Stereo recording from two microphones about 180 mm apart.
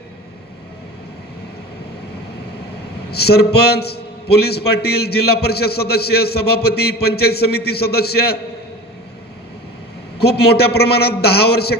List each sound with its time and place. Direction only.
3.1 s a man's voice: 60° left (ahead or behind)
10.1 s a man's voice: 65° left (ahead or behind)